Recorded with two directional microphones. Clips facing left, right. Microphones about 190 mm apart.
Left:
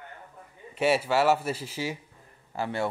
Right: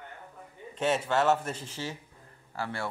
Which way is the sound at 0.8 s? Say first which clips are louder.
Left 3 dB; 10° left (ahead or behind).